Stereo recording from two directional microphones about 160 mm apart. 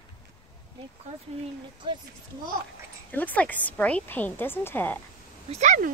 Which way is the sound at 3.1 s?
10° left (ahead or behind).